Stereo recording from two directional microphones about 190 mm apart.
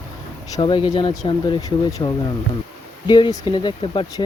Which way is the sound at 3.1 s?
25° left (ahead or behind).